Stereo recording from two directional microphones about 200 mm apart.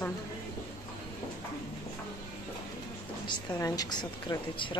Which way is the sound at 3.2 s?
20° left (ahead or behind).